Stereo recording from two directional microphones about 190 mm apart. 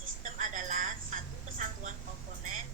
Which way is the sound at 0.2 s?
40° right (ahead or behind).